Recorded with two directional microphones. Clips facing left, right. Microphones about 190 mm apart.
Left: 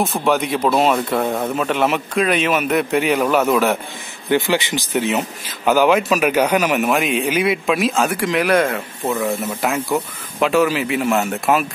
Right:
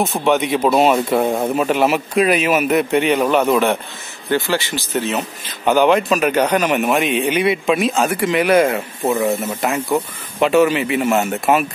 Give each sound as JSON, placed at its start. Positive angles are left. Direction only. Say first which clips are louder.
{"t": 0.0, "sound": "a man's voice", "louder": "right 1 dB", "side_deg": 0}
{"t": 4.3, "sound": "speech", "louder": "left 1 dB", "side_deg": 15}
{"t": 5.7, "sound": "a man's voice", "louder": "right 1 dB", "side_deg": 5}